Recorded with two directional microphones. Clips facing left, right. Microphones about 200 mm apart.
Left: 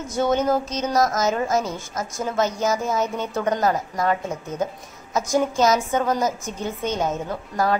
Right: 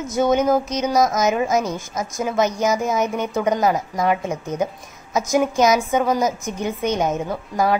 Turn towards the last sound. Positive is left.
turn(degrees=-15)  # may be behind; listen again after turning